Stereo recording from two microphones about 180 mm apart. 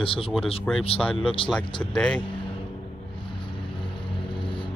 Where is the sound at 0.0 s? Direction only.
30° left (ahead or behind).